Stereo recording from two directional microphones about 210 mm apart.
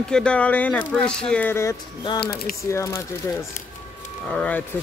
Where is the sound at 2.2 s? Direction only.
45° left (ahead or behind).